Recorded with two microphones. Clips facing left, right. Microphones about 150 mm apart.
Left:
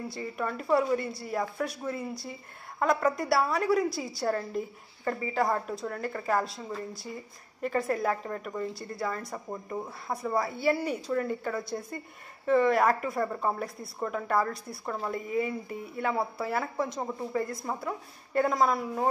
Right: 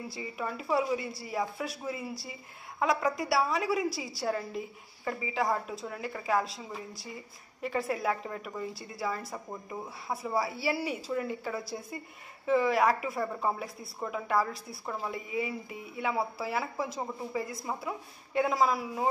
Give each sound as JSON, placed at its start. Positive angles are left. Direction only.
{"t": 0.1, "sound": "a woman's voice", "side_deg": -5}